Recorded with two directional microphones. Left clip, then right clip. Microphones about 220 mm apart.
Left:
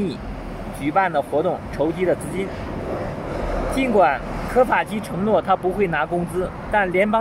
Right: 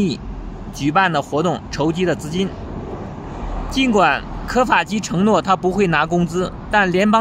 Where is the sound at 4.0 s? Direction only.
20° right (ahead or behind).